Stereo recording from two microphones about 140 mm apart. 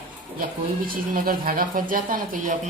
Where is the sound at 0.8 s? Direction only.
90° right.